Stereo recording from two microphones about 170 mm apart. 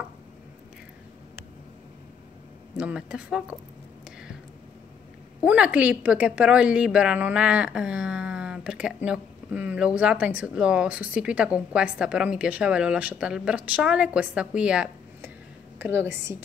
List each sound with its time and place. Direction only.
2.8 s speech: 5° right (ahead or behind)
5.4 s a woman's voice: 5° right (ahead or behind)